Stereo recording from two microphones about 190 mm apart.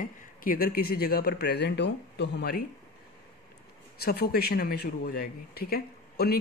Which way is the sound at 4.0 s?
55° left (ahead or behind).